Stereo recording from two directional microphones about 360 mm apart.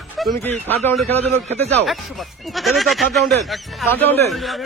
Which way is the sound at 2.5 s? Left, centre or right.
Centre.